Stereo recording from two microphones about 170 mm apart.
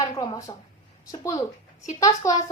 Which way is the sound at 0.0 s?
20° left (ahead or behind).